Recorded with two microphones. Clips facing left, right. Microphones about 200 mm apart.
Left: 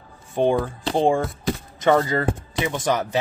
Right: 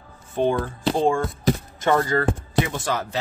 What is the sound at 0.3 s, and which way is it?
Speech, 15° left (ahead or behind).